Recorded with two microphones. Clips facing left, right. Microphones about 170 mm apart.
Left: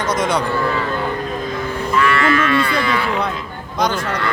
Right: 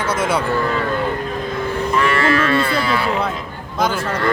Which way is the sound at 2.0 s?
35° right (ahead or behind).